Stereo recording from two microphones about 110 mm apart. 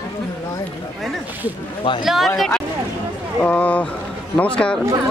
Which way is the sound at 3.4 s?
15° left (ahead or behind).